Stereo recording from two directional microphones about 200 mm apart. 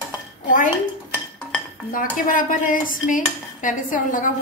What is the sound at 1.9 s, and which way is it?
Dishes, 45° left (ahead or behind).